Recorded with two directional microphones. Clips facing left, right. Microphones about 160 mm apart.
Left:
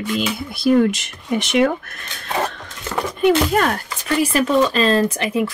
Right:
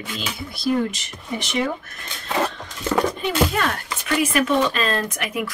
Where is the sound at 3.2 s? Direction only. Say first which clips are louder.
Left 6 dB; 50° left (ahead or behind).